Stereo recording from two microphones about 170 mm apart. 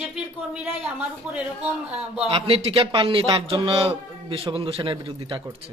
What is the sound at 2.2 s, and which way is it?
A man's voice, 35° right (ahead or behind).